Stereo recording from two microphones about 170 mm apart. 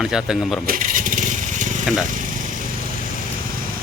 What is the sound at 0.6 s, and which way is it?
Lawn mower, 55° right (ahead or behind).